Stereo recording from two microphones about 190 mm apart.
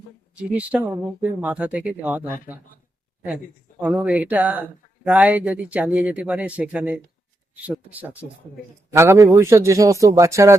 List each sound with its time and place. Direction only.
0.3 s speech: 5° right (ahead or behind)